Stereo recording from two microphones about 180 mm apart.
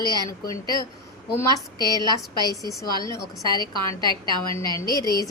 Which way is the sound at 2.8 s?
15° left (ahead or behind).